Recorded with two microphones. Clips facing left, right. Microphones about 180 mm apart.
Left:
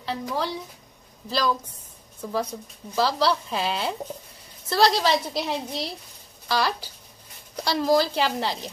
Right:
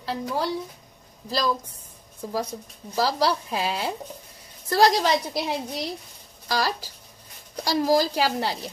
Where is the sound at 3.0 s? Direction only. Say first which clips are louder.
Left 1 dB; 10° right (ahead or behind).